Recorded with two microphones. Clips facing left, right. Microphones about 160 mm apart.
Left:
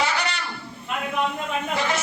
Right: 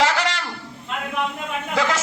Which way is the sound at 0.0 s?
90° right.